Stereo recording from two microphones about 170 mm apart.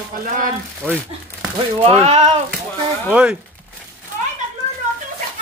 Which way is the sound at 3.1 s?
5° right (ahead or behind).